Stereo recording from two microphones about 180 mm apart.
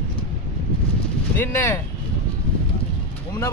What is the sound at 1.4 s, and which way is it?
Speech, 15° left (ahead or behind).